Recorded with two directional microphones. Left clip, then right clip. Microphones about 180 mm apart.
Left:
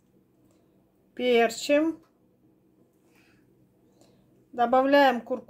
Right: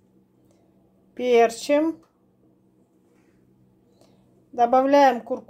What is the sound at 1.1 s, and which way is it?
Speech, 5° right (ahead or behind).